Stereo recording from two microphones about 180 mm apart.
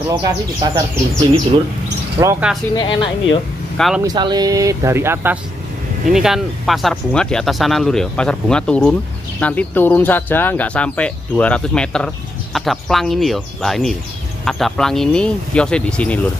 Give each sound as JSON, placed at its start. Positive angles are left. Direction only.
{"t": 0.1, "sound": "speech", "side_deg": -20}
{"t": 2.2, "sound": "speech", "side_deg": -20}
{"t": 2.7, "sound": "speech", "side_deg": 25}
{"t": 3.7, "sound": "speech", "side_deg": 0}
{"t": 4.0, "sound": "speech", "side_deg": -20}
{"t": 6.0, "sound": "speech", "side_deg": 0}